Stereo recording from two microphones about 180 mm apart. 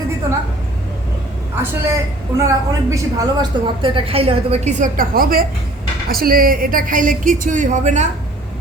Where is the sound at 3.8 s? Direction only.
30° right (ahead or behind).